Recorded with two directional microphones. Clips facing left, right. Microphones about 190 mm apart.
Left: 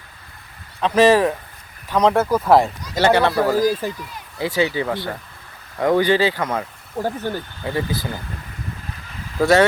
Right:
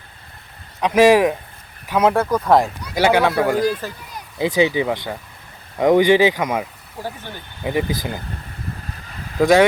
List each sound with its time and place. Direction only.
0.8 s speech: 15° right (ahead or behind); by 2.6 s 5° left (ahead or behind)
2.9 s speech: 10° right (ahead or behind)
4.4 s speech: 15° right (ahead or behind)
7.0 s speech: 45° left (ahead or behind)
7.6 s speech: 15° right (ahead or behind)
9.4 s speech: 15° right (ahead or behind)